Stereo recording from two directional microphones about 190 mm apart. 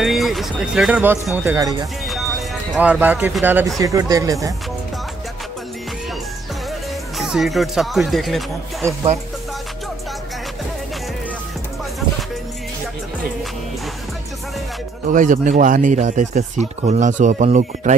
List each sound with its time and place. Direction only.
0.0 s speech: centre (ahead or behind); by 1.9 s 20° right (ahead or behind)
2.0 s speech: centre (ahead or behind); by 4.6 s 15° right (ahead or behind)
7.2 s speech: centre (ahead or behind)
15.0 s speech: 40° right (ahead or behind)